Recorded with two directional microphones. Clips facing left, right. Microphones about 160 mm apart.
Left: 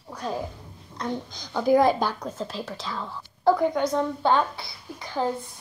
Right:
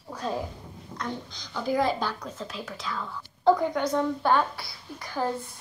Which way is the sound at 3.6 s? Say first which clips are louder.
Left 2 dB; 20° left (ahead or behind).